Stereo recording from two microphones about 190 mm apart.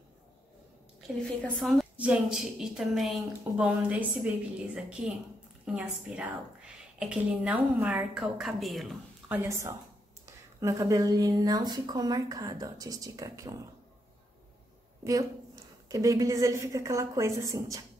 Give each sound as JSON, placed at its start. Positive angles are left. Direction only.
{"t": 1.2, "sound": "a woman's voice", "side_deg": 5}
{"t": 9.4, "sound": "a woman's voice", "side_deg": -15}
{"t": 15.9, "sound": "a woman's voice", "side_deg": -15}